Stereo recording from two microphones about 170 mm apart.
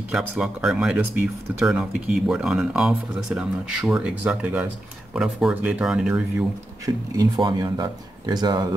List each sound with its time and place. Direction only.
0.1 s speech: 5° right (ahead or behind)
7.2 s speech: 25° right (ahead or behind)